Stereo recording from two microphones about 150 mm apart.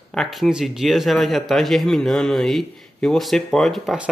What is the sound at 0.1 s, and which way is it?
Speech, centre (ahead or behind).